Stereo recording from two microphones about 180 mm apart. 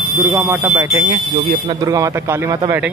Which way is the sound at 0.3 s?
15° right (ahead or behind).